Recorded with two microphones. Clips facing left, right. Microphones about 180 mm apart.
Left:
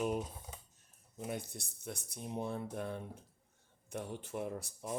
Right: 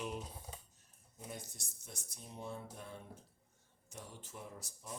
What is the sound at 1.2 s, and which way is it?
Speech, 60° left (ahead or behind).